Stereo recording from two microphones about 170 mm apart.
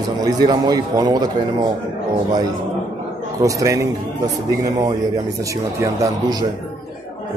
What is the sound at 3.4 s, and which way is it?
A man's voice, 20° right (ahead or behind).